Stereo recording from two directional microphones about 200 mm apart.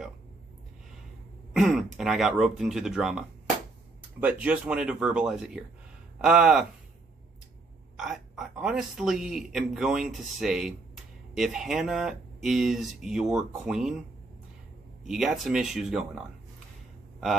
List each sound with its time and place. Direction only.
1.5 s speech: centre (ahead or behind)
8.0 s speech: centre (ahead or behind)
15.0 s speech: centre (ahead or behind)